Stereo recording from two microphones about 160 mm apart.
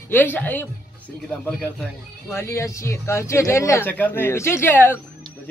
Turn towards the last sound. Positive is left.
turn(degrees=15)  # may be behind; listen again after turning